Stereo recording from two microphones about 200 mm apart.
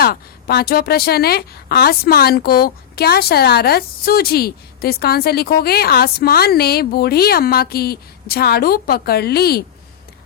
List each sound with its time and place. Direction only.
0.0 s a woman's voice: 50° left (ahead or behind)